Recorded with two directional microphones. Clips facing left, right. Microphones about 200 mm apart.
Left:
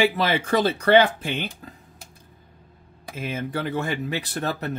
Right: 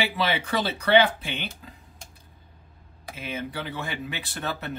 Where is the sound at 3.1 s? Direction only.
50° left (ahead or behind).